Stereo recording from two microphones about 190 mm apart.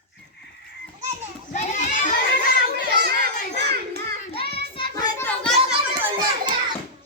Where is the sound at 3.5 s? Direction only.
60° right (ahead or behind).